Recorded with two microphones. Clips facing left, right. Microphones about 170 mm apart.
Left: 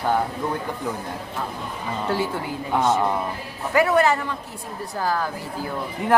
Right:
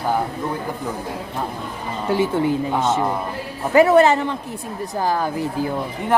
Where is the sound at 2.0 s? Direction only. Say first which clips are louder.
Right 8 dB; 20° right (ahead or behind).